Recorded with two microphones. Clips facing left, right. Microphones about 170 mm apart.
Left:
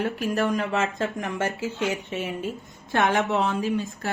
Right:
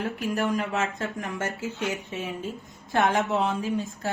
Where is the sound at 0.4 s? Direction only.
Centre (ahead or behind).